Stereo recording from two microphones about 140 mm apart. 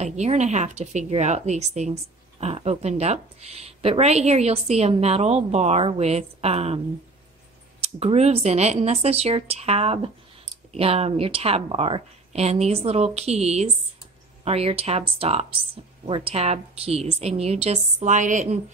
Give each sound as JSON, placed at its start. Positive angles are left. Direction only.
{"t": 0.0, "sound": "a woman's voice", "side_deg": -55}
{"t": 7.8, "sound": "speech", "side_deg": -45}